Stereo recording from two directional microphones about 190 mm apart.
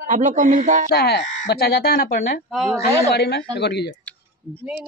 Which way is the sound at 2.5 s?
Centre (ahead or behind).